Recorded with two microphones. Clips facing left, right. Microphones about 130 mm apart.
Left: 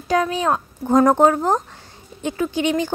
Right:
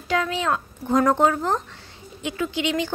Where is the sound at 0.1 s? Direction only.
35° left (ahead or behind).